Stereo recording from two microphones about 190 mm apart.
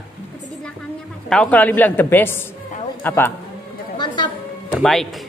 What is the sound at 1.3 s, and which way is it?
A man's voice, 5° left (ahead or behind).